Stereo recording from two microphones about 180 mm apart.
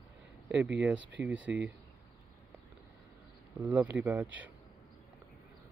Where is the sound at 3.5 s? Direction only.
10° right (ahead or behind).